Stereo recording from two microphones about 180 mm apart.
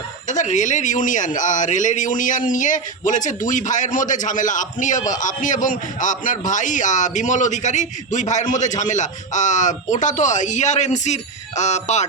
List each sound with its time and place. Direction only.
0.3 s speech: 40° left (ahead or behind)